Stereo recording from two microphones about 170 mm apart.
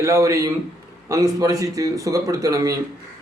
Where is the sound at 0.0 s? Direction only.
20° right (ahead or behind).